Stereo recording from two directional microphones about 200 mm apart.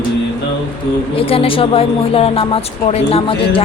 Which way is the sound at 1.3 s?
25° left (ahead or behind).